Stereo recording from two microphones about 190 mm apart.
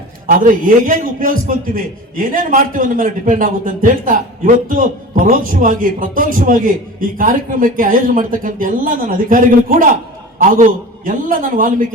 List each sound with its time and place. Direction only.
0.3 s a man's voice: 45° right (ahead or behind)